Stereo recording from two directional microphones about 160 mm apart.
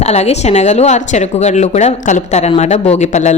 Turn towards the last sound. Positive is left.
turn(degrees=45)  # may be behind; listen again after turning